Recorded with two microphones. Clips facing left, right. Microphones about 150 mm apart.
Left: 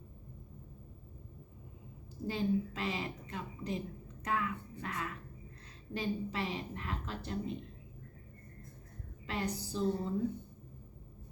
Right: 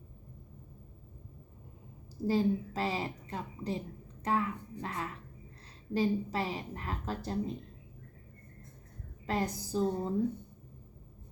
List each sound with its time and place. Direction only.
2.2 s a woman's voice: 35° right (ahead or behind)
9.2 s speech: 40° right (ahead or behind)